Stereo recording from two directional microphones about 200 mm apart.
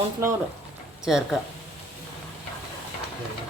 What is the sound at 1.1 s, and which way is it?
Speech, centre (ahead or behind).